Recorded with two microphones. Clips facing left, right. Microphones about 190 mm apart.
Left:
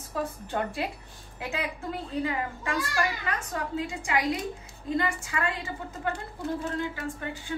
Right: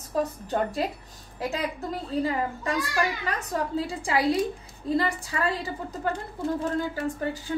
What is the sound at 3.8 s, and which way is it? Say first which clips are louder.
Speech: right 1 dB; 35° right (ahead or behind).